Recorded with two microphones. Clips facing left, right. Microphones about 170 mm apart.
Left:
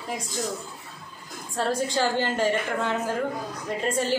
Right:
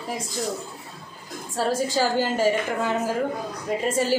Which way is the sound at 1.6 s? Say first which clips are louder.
Right 2 dB; 5° right (ahead or behind).